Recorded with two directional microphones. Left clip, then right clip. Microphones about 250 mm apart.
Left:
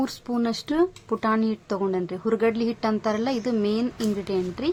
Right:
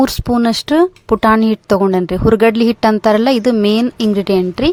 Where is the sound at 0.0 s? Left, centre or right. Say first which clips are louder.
Right 13 dB; right.